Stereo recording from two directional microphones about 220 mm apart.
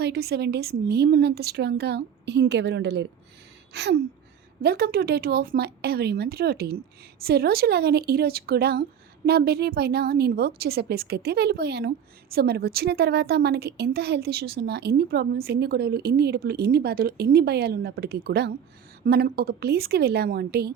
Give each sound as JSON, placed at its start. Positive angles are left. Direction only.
{"t": 0.0, "sound": "speech", "side_deg": -45}
{"t": 3.7, "sound": "gasp", "side_deg": -50}
{"t": 4.6, "sound": "speech", "side_deg": -45}